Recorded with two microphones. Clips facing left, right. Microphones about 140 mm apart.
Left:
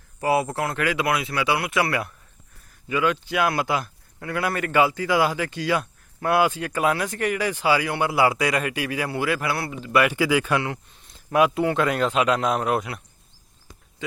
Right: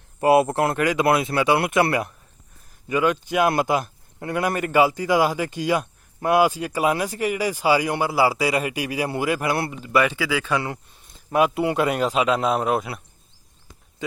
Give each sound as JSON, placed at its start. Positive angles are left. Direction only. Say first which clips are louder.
{"t": 0.2, "sound": "speech", "louder": "right 5 dB", "side_deg": -25}
{"t": 10.1, "sound": "speech", "louder": "left 2 dB", "side_deg": 15}
{"t": 11.3, "sound": "a man's voice", "louder": "even", "side_deg": -5}